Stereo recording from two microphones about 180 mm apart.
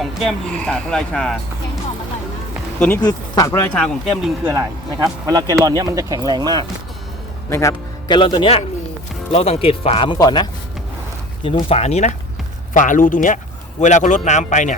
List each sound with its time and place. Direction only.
0.0 s speech: centre (ahead or behind)
3.0 s a man's voice: 20° left (ahead or behind)
3.8 s speech: centre (ahead or behind)
4.4 s speech: 15° right (ahead or behind)
7.5 s a man's voice: 15° left (ahead or behind); by 14.8 s 40° left (ahead or behind)